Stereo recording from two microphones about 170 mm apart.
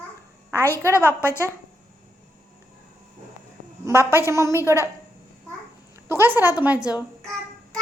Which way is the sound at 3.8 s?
15° right (ahead or behind).